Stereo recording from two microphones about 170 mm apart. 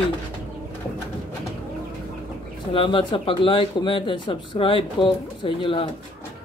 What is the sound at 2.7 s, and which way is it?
Speech, 30° left (ahead or behind).